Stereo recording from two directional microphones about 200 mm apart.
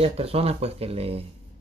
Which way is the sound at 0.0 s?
30° right (ahead or behind).